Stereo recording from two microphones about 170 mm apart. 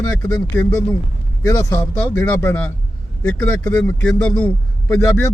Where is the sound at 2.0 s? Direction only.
10° left (ahead or behind).